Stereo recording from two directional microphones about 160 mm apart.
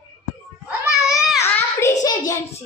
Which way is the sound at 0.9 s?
5° right (ahead or behind).